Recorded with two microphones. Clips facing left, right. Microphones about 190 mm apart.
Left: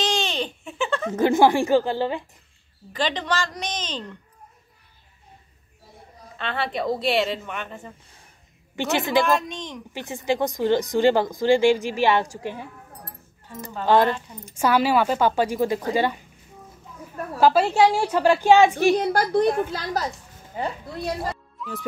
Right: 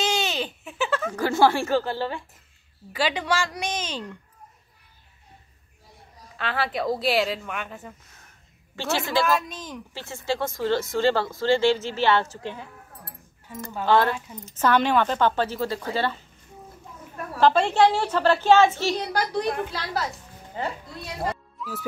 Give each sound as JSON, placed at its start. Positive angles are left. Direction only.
{"t": 0.0, "sound": "a sound", "side_deg": -10}
{"t": 1.1, "sound": "speech", "side_deg": 20}
{"t": 2.9, "sound": "a woman's voice", "side_deg": -10}
{"t": 6.3, "sound": "speech", "side_deg": -5}
{"t": 8.7, "sound": "speech", "side_deg": 20}
{"t": 9.2, "sound": "speech", "side_deg": 0}
{"t": 9.9, "sound": "speech", "side_deg": 15}
{"t": 13.8, "sound": "speech", "side_deg": 15}
{"t": 17.4, "sound": "speech", "side_deg": 5}
{"t": 18.9, "sound": "a child's voice", "side_deg": 50}
{"t": 20.5, "sound": "speech", "side_deg": 15}
{"t": 21.5, "sound": "music", "side_deg": -5}